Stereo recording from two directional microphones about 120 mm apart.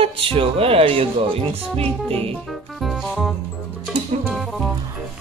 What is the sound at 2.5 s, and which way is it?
Music, centre (ahead or behind).